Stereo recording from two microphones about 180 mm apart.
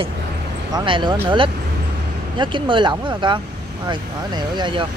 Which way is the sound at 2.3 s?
25° right (ahead or behind).